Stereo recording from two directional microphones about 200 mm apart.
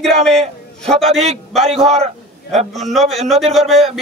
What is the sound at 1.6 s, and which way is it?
Speech, 30° right (ahead or behind).